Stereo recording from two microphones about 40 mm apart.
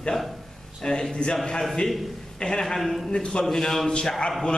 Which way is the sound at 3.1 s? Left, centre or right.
Left.